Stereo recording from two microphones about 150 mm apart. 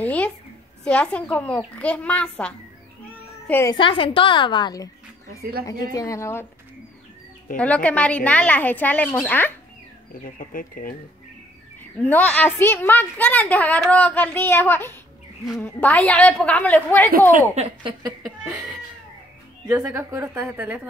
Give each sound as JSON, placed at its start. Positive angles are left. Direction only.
{"t": 0.0, "sound": "a sound", "side_deg": 10}
{"t": 0.8, "sound": "a woman's voice", "side_deg": 5}
{"t": 3.7, "sound": "a woman's voice", "side_deg": 35}
{"t": 7.5, "sound": "a woman's voice", "side_deg": 10}
{"t": 10.2, "sound": "speech", "side_deg": 70}
{"t": 11.8, "sound": "a woman's voice", "side_deg": 10}
{"t": 17.6, "sound": "a woman's voice", "side_deg": -40}
{"t": 18.2, "sound": "cat", "side_deg": 0}
{"t": 19.7, "sound": "a woman's voice", "side_deg": -20}